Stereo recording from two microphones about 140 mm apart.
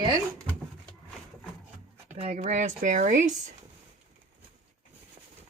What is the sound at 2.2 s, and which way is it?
Speech, 60° right (ahead or behind).